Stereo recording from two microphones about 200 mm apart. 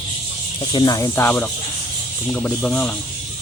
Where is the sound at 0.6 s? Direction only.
20° left (ahead or behind).